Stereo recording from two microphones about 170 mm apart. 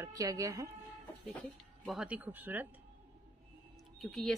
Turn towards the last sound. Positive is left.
turn(degrees=0)  # may be behind; listen again after turning